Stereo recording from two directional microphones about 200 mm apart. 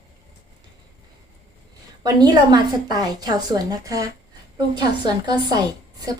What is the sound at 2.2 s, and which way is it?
A woman's voice, 20° right (ahead or behind).